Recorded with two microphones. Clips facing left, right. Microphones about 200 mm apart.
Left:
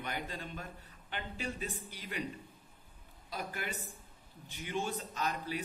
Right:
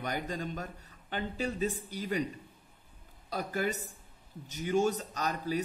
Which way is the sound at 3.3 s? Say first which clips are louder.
Right 8 dB; 40° right (ahead or behind).